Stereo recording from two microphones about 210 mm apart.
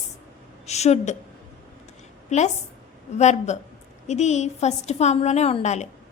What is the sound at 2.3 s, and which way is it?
A woman's voice, 35° left (ahead or behind).